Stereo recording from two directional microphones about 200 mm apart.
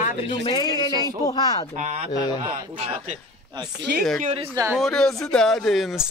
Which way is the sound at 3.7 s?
55° right (ahead or behind).